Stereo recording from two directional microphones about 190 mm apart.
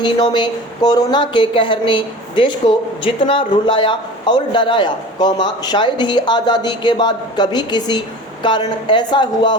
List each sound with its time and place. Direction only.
0.0 s speech: 25° left (ahead or behind)